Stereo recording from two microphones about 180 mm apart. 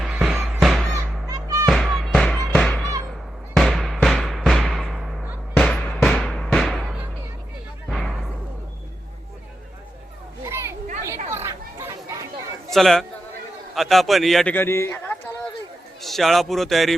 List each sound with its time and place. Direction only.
0.0 s music: 5° right (ahead or behind)
0.9 s music: 20° right (ahead or behind)
1.6 s music: centre (ahead or behind)
7.9 s a sound: centre (ahead or behind)
10.4 s a sound: 15° right (ahead or behind)
11.3 s chatter: 15° right (ahead or behind)
12.7 s a man's voice: centre (ahead or behind)